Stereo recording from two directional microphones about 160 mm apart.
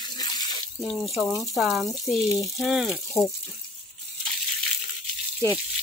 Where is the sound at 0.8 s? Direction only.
Centre (ahead or behind).